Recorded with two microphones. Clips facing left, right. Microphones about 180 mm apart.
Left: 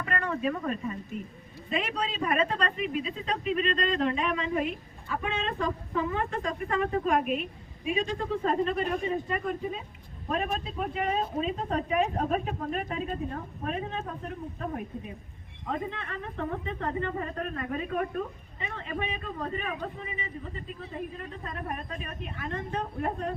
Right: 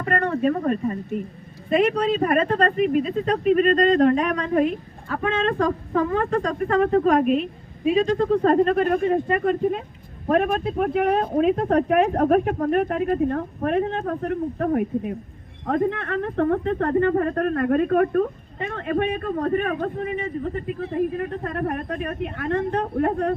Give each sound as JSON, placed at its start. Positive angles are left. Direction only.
{"t": 0.0, "sound": "speech", "side_deg": -60}
{"t": 5.6, "sound": "a woman's voice", "side_deg": -55}
{"t": 6.3, "sound": "speech", "side_deg": -45}
{"t": 8.4, "sound": "a woman's voice", "side_deg": -60}